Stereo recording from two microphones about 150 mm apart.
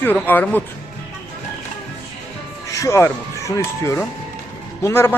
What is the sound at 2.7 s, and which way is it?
Speech, 20° left (ahead or behind).